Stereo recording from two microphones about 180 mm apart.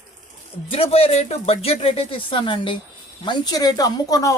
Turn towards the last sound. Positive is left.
turn(degrees=20)  # may be behind; listen again after turning